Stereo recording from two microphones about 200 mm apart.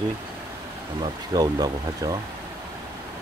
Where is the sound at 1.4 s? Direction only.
20° right (ahead or behind).